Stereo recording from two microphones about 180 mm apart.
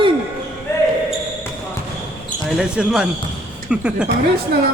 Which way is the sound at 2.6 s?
5° right (ahead or behind).